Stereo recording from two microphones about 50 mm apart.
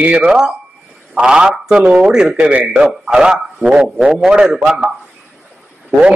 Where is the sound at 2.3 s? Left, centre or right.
Right.